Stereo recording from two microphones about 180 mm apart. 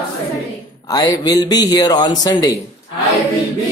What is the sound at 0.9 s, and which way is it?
Speech, 25° left (ahead or behind).